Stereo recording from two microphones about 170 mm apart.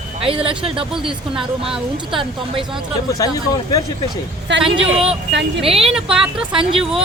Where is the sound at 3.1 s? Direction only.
20° left (ahead or behind).